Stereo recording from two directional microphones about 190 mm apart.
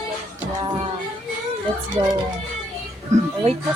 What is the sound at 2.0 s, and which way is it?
Speech, 25° right (ahead or behind).